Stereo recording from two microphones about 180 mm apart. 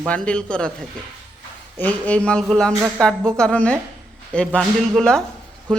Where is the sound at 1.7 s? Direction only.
10° left (ahead or behind).